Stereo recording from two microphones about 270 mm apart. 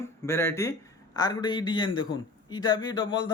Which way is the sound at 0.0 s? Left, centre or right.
Centre.